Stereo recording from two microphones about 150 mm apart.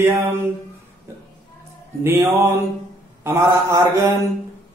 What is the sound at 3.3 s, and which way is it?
Speech, 20° right (ahead or behind).